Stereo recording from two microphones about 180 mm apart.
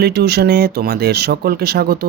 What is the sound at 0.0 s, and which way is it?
Speech, 65° right (ahead or behind).